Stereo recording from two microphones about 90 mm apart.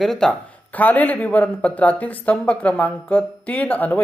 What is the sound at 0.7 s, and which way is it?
Speech, 20° left (ahead or behind).